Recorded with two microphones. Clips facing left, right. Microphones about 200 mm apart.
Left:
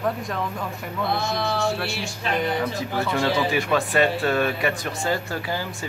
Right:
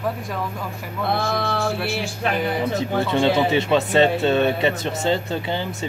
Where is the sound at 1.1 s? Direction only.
55° right (ahead or behind).